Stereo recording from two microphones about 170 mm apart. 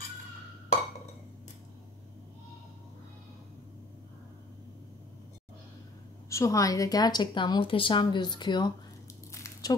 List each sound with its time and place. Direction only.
6.2 s a woman's voice: 20° left (ahead or behind)
9.3 s squish: 20° left (ahead or behind)